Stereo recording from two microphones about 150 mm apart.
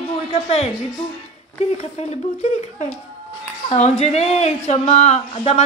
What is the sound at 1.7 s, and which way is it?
A woman's voice, 45° left (ahead or behind).